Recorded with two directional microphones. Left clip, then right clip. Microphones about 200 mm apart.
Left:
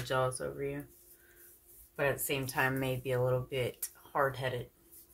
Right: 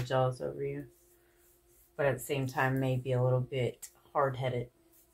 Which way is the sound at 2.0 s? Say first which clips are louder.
Right 1 dB; 15° left (ahead or behind).